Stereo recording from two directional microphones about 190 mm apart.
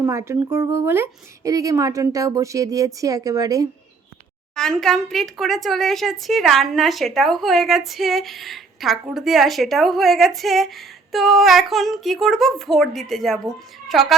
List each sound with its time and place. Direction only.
0.0 s speech: 15° right (ahead or behind)
4.5 s speech: 5° left (ahead or behind)